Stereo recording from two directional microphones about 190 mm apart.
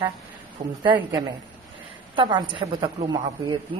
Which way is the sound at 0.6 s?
35° right (ahead or behind).